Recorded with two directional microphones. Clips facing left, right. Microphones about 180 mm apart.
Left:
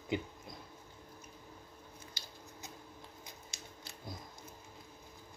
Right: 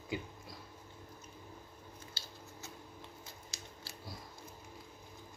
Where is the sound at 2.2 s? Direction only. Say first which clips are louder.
Right 1 dB; 15° left (ahead or behind).